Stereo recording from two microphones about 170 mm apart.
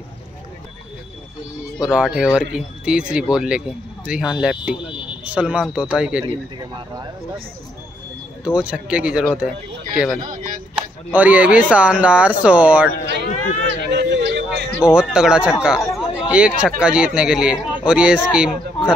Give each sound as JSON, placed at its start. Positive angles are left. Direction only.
{"t": 1.8, "sound": "speech", "side_deg": -5}
{"t": 4.7, "sound": "a sound", "side_deg": 30}
{"t": 5.2, "sound": "speech", "side_deg": -5}
{"t": 6.7, "sound": "speech", "side_deg": -25}
{"t": 8.5, "sound": "speech", "side_deg": -5}
{"t": 10.2, "sound": "a sound", "side_deg": -55}
{"t": 11.1, "sound": "speech", "side_deg": -10}
{"t": 13.3, "sound": "run", "side_deg": 50}
{"t": 13.7, "sound": "a sound", "side_deg": -85}
{"t": 14.9, "sound": "speech", "side_deg": -5}